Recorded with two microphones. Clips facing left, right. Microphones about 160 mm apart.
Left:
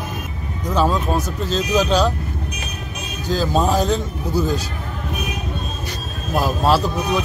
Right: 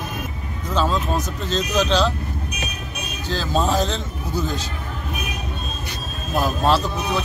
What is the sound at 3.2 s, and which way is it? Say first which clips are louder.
A man's voice: left 3 dB; 10° left (ahead or behind).